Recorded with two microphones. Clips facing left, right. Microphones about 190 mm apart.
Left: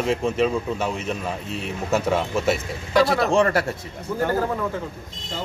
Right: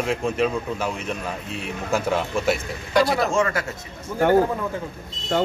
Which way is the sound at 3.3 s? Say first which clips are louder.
Left 3 dB; 35° left (ahead or behind).